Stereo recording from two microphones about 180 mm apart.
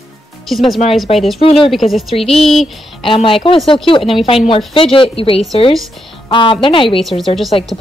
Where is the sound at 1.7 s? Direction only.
Centre (ahead or behind).